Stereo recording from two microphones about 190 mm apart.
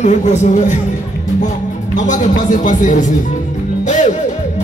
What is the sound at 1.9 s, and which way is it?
Speech, 40° left (ahead or behind).